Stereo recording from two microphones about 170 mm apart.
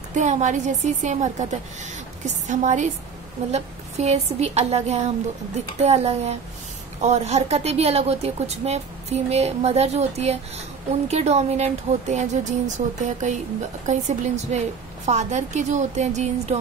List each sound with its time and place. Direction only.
0.1 s a woman's voice: 45° right (ahead or behind)